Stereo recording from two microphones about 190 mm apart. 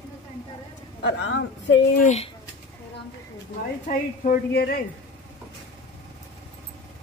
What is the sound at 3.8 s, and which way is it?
Speech, 50° left (ahead or behind).